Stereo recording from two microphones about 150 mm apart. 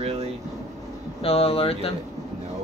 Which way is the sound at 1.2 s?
40° left (ahead or behind).